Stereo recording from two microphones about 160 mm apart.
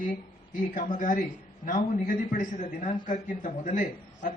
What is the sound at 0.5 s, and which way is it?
A man's voice, 55° left (ahead or behind).